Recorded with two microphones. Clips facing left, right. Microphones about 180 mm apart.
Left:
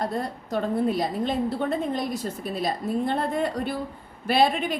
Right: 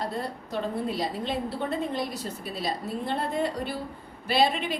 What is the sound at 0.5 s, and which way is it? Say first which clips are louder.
A woman's voice: left 6 dB; 50° left (ahead or behind).